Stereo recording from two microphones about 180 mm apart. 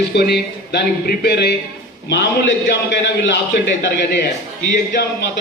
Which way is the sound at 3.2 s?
75° left (ahead or behind).